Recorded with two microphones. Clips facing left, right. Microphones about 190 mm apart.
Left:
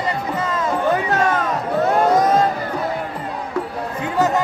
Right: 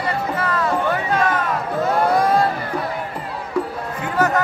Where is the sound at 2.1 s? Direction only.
20° left (ahead or behind).